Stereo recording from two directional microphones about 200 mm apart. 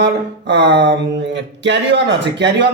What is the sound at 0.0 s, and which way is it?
Speech, 60° right (ahead or behind).